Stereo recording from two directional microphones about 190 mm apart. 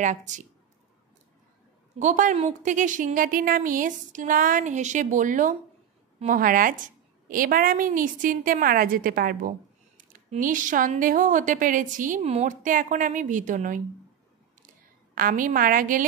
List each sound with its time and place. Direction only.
0.0 s speech: 40° right (ahead or behind)
2.0 s a woman's voice: 40° right (ahead or behind)
15.1 s a woman's voice: 45° right (ahead or behind)